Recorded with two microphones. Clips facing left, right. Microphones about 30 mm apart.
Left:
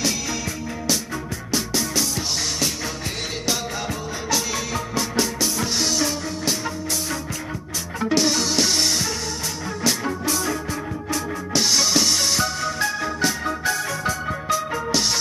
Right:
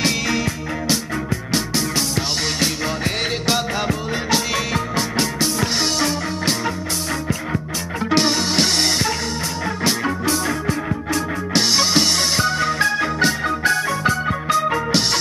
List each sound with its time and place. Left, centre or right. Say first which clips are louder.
0.0 s music: right 5 dB; right
8.1 s music: right 2 dB; right
11.5 s music: right 2 dB; right